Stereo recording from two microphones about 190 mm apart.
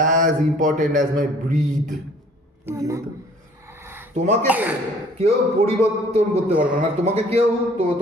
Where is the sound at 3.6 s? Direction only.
10° right (ahead or behind).